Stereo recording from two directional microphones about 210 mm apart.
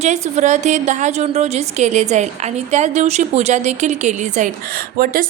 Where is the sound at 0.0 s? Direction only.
35° right (ahead or behind).